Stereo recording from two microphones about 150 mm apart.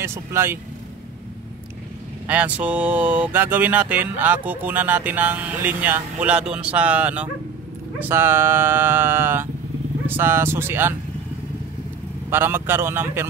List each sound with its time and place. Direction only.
0.0 s speech: 15° right (ahead or behind)
2.2 s speech: 10° right (ahead or behind)
12.3 s speech: 15° right (ahead or behind)